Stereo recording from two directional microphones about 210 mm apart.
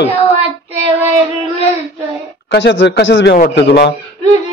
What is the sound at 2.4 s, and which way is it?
Speech, 60° left (ahead or behind).